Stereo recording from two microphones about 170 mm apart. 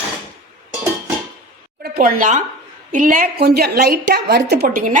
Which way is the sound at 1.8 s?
60° right (ahead or behind).